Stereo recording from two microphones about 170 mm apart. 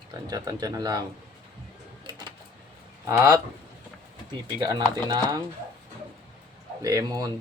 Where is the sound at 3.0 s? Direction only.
15° right (ahead or behind).